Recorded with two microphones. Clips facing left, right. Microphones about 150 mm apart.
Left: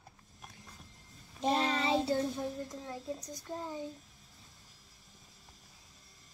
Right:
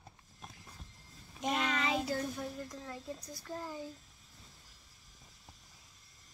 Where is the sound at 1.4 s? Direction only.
30° left (ahead or behind).